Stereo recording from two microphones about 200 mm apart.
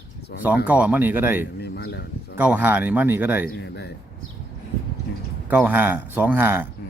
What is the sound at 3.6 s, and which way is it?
Speech, 60° left (ahead or behind).